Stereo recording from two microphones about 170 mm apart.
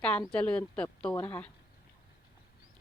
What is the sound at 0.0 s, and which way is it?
Speech, 5° left (ahead or behind).